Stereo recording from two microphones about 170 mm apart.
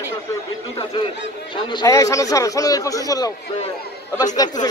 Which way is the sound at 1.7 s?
20° left (ahead or behind).